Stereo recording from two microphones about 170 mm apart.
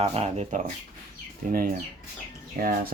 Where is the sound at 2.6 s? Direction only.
60° right (ahead or behind).